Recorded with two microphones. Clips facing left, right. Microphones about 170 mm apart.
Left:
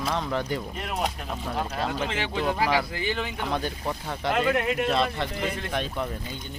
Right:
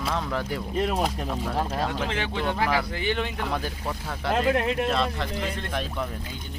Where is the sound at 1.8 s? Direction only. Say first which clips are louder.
Even; 5° left (ahead or behind).